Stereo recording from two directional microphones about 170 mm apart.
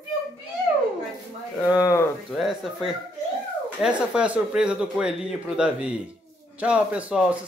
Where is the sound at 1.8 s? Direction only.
20° left (ahead or behind).